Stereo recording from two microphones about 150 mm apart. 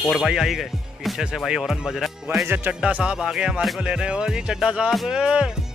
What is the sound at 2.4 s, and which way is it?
Music, 15° right (ahead or behind).